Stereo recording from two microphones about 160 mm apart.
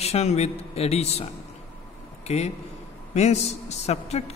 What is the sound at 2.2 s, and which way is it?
A man's voice, 45° left (ahead or behind).